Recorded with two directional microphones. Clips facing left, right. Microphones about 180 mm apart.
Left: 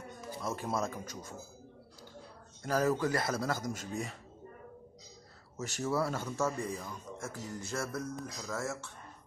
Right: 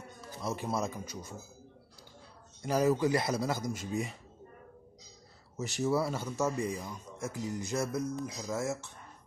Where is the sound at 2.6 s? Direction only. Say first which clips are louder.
Right 2 dB; 15° right (ahead or behind).